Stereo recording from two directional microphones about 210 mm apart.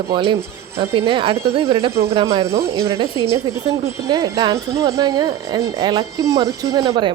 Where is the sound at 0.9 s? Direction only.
25° right (ahead or behind).